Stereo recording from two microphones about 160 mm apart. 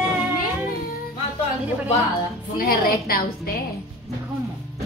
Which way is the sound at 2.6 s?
65° left (ahead or behind).